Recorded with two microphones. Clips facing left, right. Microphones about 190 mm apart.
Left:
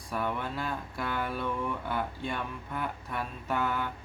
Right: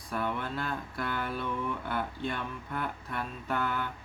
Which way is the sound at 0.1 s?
10° left (ahead or behind).